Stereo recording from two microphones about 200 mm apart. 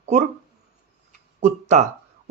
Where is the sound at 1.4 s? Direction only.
35° right (ahead or behind).